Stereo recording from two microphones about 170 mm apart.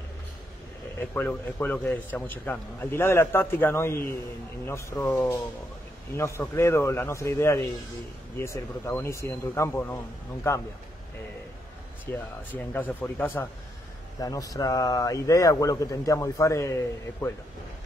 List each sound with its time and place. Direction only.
0.9 s a man's voice: 10° left (ahead or behind)
12.1 s a man's voice: 10° left (ahead or behind)